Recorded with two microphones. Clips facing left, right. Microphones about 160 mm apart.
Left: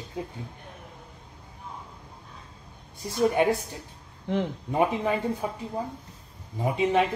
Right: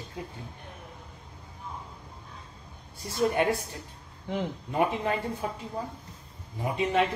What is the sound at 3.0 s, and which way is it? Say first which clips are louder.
Speech: left 3 dB; 15° left (ahead or behind).